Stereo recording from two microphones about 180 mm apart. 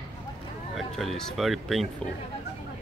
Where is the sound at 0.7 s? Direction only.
Centre (ahead or behind).